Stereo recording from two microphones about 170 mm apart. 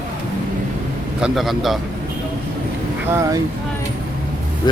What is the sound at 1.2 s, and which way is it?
Speech, 5° right (ahead or behind).